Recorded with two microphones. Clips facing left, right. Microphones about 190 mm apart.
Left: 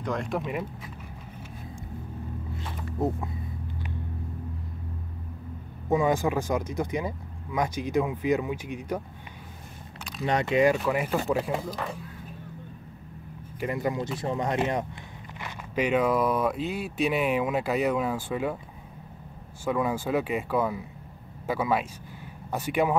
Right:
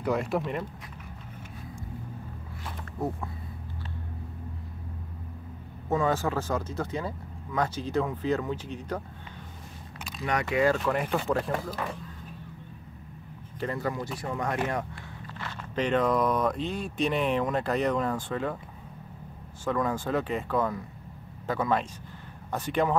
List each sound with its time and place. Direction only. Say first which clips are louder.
0.0 s speech: right 2 dB; 5° right (ahead or behind)
5.9 s speech: left 3 dB; 15° left (ahead or behind)
10.2 s speech: left 3 dB; 25° left (ahead or behind)
10.8 s speech: left 1 dB; 5° left (ahead or behind)
13.6 s speech: left 2 dB; 15° left (ahead or behind)
19.6 s speech: left 1 dB; 10° left (ahead or behind)